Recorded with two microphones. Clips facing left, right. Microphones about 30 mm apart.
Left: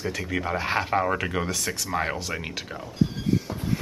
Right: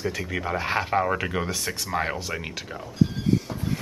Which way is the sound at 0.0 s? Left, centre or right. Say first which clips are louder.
Even; centre.